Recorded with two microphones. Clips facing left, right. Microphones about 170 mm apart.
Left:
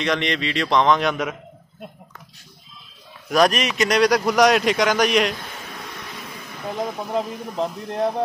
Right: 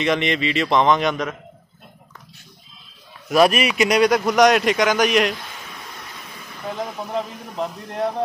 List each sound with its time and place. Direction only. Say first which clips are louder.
0.0 s a man's voice: right 2 dB; 5° right (ahead or behind)
3.3 s a man's voice: right 2 dB; 5° right (ahead or behind)
7.2 s speech: left 2 dB; 20° left (ahead or behind)